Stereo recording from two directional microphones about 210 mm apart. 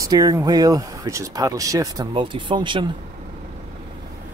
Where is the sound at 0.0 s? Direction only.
15° right (ahead or behind).